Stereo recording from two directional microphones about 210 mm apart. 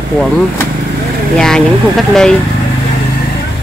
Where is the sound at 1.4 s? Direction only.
Centre (ahead or behind).